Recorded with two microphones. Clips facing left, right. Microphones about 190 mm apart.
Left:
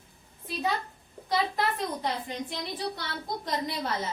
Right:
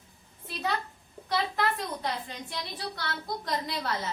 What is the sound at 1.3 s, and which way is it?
A woman's voice, 20° left (ahead or behind).